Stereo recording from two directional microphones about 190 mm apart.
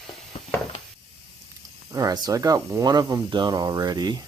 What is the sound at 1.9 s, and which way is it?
Speech, 20° right (ahead or behind).